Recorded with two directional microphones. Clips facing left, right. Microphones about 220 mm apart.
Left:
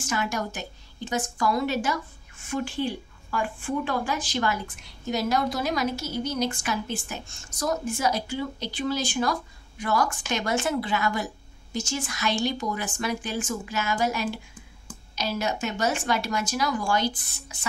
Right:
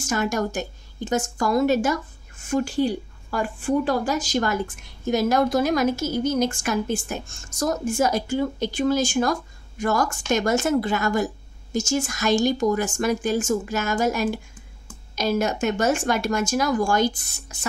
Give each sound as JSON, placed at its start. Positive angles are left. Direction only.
{"t": 0.0, "sound": "a woman's voice", "side_deg": -45}